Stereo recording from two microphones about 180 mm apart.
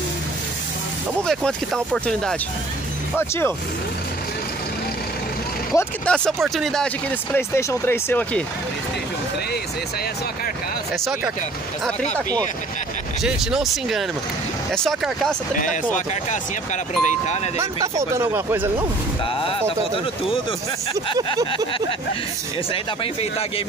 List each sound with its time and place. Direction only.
1.2 s speech: centre (ahead or behind)
5.8 s speech: 5° left (ahead or behind)
7.3 s speech: 15° left (ahead or behind)
13.2 s speech: centre (ahead or behind)
16.3 s speech: 40° left (ahead or behind)
17.6 s speech: 15° right (ahead or behind)